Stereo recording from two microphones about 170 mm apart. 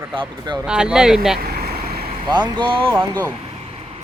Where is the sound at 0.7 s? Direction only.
5° right (ahead or behind).